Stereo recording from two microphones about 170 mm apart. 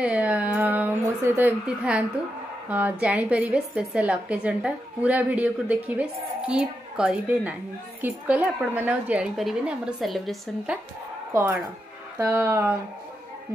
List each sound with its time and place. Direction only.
0.0 s music: 5° right (ahead or behind)
1.2 s a woman's voice: 10° right (ahead or behind)
11.3 s a woman's voice: 10° right (ahead or behind)